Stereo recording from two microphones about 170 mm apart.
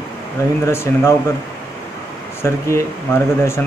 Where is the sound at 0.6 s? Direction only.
15° left (ahead or behind).